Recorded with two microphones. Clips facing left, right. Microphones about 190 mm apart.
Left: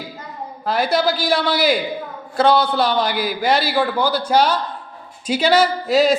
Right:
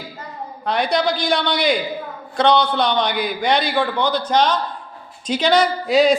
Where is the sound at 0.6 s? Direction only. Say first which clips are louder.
Left 1 dB; 5° left (ahead or behind).